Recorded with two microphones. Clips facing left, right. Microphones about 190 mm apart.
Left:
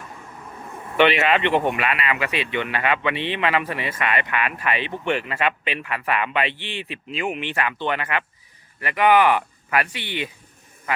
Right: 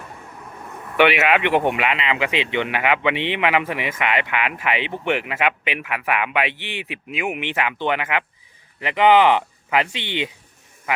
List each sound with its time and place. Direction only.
0.9 s speech: 10° right (ahead or behind)